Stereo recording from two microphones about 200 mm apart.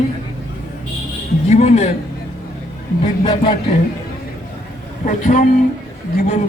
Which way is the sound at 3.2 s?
25° left (ahead or behind).